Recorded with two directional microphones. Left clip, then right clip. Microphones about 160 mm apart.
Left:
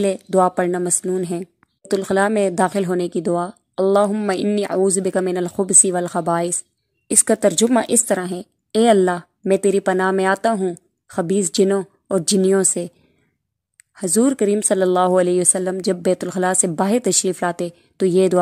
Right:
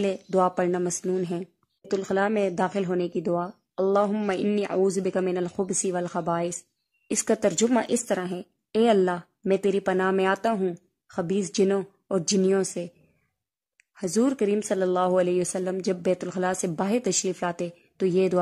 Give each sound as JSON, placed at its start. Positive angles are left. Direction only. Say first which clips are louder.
{"t": 0.0, "sound": "speech", "louder": "left 7 dB", "side_deg": 25}
{"t": 11.1, "sound": "a woman's voice", "louder": "left 8 dB", "side_deg": 30}